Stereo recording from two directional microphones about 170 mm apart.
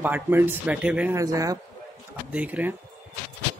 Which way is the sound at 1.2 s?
20° right (ahead or behind).